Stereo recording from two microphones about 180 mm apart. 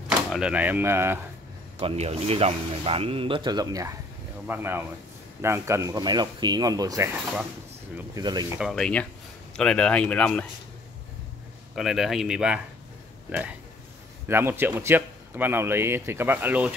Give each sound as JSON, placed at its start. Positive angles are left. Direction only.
{"t": 0.3, "sound": "a man's voice", "side_deg": -5}
{"t": 1.8, "sound": "a man's voice", "side_deg": -35}
{"t": 8.5, "sound": "speech", "side_deg": 0}
{"t": 11.7, "sound": "speech", "side_deg": 0}
{"t": 14.2, "sound": "a man's voice", "side_deg": -15}